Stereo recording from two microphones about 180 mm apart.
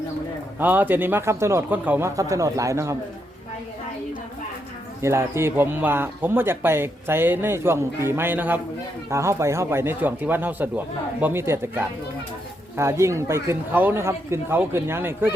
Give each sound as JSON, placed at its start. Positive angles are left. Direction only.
{"t": 0.6, "sound": "speech", "side_deg": -10}
{"t": 5.0, "sound": "speech", "side_deg": -15}